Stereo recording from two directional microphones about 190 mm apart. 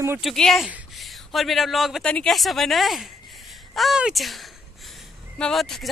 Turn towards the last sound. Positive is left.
turn(degrees=0)  # may be behind; listen again after turning